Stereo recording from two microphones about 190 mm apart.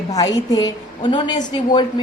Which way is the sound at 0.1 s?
20° left (ahead or behind).